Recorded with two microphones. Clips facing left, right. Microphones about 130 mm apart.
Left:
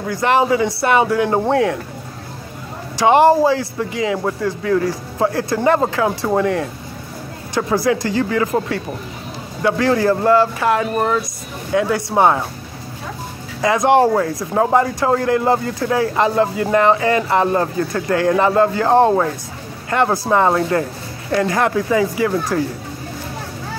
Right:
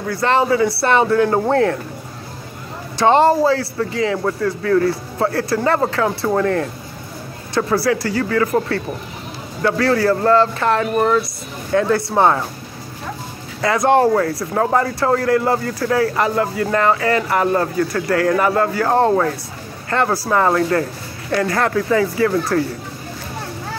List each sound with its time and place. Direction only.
0.1 s speech: 15° left (ahead or behind)
3.0 s speech: 15° left (ahead or behind)
10.9 s a woman's voice: centre (ahead or behind)
11.7 s speech: 15° left (ahead or behind)
13.6 s speech: 20° left (ahead or behind)